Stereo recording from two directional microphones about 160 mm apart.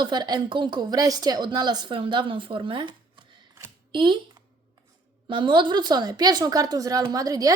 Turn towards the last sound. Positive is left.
turn(degrees=-25)  # may be behind; listen again after turning